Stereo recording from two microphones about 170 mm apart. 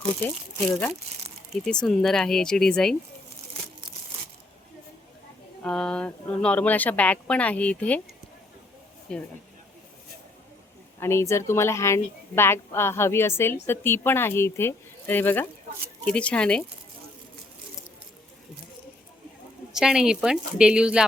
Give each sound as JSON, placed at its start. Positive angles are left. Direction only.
{"t": 1.6, "sound": "a woman's voice", "side_deg": 5}
{"t": 5.6, "sound": "a woman's voice", "side_deg": 5}
{"t": 9.1, "sound": "a woman's voice", "side_deg": 5}
{"t": 11.0, "sound": "a woman's voice", "side_deg": 15}
{"t": 19.7, "sound": "a woman's voice", "side_deg": -5}